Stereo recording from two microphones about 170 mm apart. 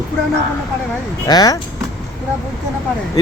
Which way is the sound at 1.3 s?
20° left (ahead or behind).